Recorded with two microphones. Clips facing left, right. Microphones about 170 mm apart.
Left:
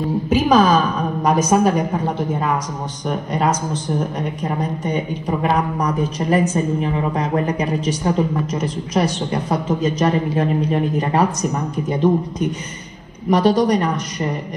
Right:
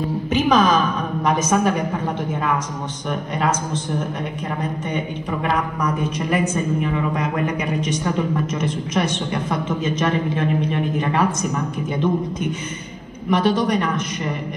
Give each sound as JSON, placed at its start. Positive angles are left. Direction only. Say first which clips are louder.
{"t": 0.6, "sound": "a man's voice", "louder": "left 2 dB", "side_deg": 35}